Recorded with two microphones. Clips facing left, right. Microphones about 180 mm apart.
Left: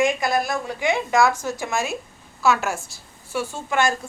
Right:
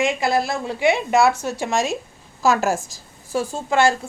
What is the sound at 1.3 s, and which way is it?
Speech, 70° right (ahead or behind).